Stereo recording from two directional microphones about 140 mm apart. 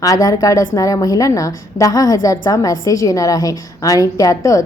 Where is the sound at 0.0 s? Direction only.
25° left (ahead or behind).